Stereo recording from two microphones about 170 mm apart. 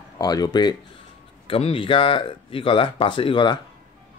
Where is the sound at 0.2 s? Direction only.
25° left (ahead or behind).